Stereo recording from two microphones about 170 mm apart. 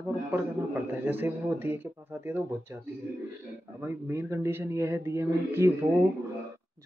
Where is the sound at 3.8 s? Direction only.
15° right (ahead or behind).